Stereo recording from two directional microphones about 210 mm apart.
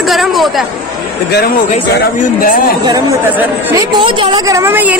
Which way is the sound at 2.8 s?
15° right (ahead or behind).